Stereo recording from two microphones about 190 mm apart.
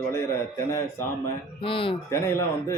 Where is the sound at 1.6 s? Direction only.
25° left (ahead or behind).